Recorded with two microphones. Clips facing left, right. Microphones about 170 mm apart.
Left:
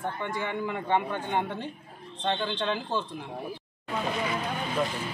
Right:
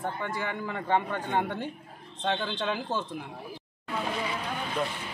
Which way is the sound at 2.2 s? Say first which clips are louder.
Left 1 dB; 5° right (ahead or behind).